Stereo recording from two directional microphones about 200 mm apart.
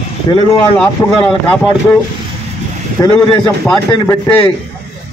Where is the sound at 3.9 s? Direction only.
15° left (ahead or behind).